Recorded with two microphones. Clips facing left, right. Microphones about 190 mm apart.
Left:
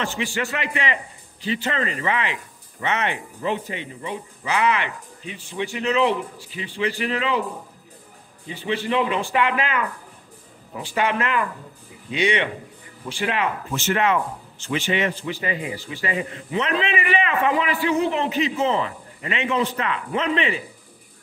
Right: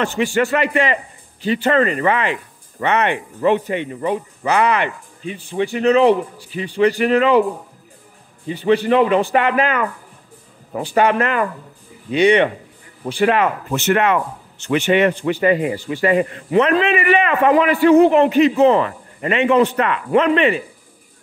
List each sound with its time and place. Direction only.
0.0 s speech: 55° right (ahead or behind)
8.6 s speech: 50° right (ahead or behind)